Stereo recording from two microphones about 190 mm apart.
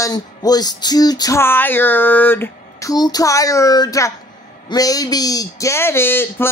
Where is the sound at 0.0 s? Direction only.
20° left (ahead or behind).